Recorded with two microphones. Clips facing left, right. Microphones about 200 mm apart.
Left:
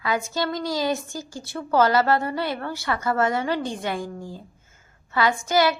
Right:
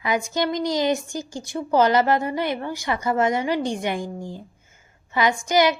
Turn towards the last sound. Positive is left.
turn(degrees=-15)  # may be behind; listen again after turning